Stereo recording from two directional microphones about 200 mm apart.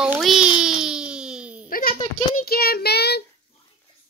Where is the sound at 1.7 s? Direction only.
45° left (ahead or behind).